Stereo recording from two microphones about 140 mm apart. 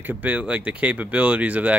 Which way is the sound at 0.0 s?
10° right (ahead or behind).